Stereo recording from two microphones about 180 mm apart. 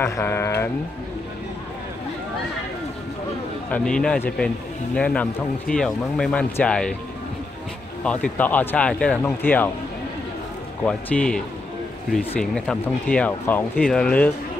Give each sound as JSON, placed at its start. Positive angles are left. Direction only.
{"t": 0.0, "sound": "speech", "side_deg": 15}
{"t": 3.7, "sound": "speech", "side_deg": 5}
{"t": 8.0, "sound": "speech", "side_deg": 5}
{"t": 10.8, "sound": "speech", "side_deg": 10}